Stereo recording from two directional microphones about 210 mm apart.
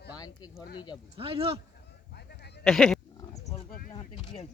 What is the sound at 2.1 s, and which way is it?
Sheep, 50° left (ahead or behind).